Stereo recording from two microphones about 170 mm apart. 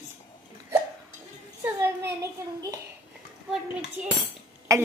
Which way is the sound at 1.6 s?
15° right (ahead or behind).